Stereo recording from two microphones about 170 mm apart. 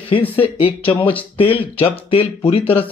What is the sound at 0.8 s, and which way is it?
Speech, 30° left (ahead or behind).